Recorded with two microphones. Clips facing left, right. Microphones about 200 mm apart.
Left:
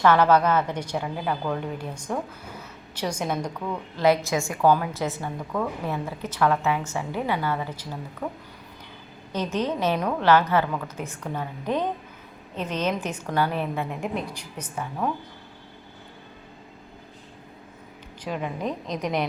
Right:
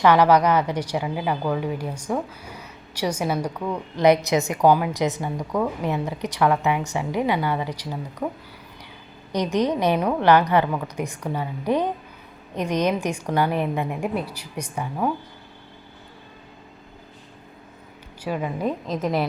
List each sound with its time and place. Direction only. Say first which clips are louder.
0.0 s a woman's voice: right 2 dB; 15° right (ahead or behind)
3.9 s a woman's voice: right 4 dB; 20° right (ahead or behind)
9.3 s a woman's voice: right 4 dB; 15° right (ahead or behind)
18.2 s a woman's voice: right 4 dB; 5° right (ahead or behind)